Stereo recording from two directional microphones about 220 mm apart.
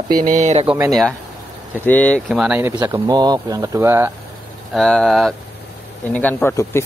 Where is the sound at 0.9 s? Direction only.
Centre (ahead or behind).